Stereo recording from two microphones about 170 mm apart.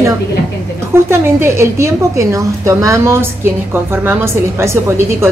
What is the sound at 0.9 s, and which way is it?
A woman's voice, 15° right (ahead or behind).